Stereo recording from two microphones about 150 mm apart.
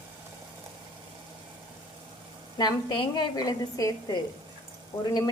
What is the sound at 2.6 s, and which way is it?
Speech, 30° left (ahead or behind).